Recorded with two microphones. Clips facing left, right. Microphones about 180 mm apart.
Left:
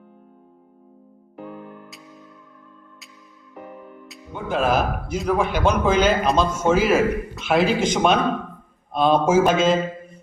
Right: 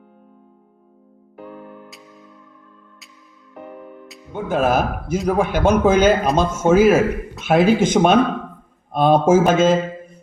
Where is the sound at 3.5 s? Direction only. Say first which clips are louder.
Right 3 dB; 5° right (ahead or behind).